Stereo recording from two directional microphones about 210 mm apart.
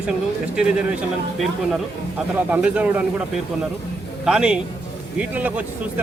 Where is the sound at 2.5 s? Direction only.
5° right (ahead or behind).